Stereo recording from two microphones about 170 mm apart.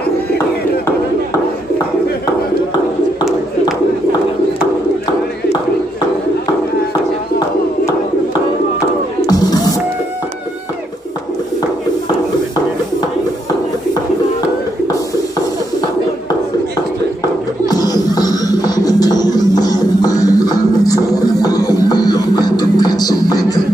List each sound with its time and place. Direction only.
8.7 s music: 20° left (ahead or behind)
17.6 s music: 25° left (ahead or behind)